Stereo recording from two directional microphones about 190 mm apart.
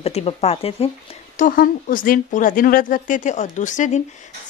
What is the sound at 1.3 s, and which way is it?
A woman's voice, 45° left (ahead or behind).